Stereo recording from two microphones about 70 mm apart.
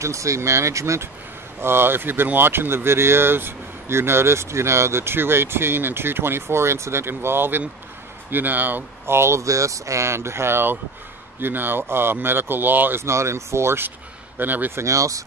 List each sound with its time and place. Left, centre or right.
0.0 s speech: right
1.6 s speech: right
13.0 s speech: right
14.4 s speech: right
14.8 s speech: right